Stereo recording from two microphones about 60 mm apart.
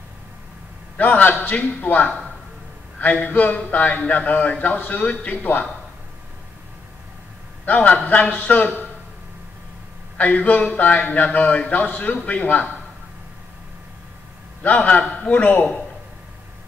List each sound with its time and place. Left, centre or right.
0.9 s a man's voice: left
7.6 s a man's voice: left
10.1 s a man's voice: left
14.9 s a man's voice: left